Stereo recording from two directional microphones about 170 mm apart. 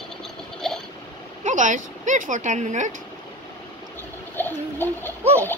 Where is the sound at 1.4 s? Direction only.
45° right (ahead or behind).